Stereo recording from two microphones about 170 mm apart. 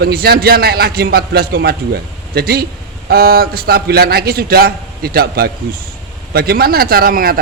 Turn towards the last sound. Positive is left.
turn(degrees=-60)  # may be behind; listen again after turning